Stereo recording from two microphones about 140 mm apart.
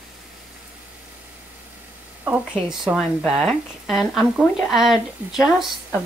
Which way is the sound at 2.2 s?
10° right (ahead or behind).